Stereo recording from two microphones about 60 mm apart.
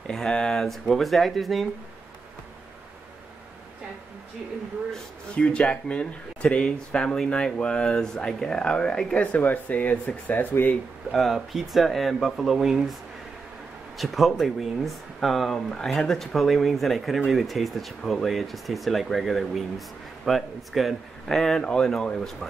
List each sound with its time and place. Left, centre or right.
0.0 s a sound: centre
0.7 s speech: centre
5.3 s speech: centre
11.1 s speech: centre
13.9 s speech: centre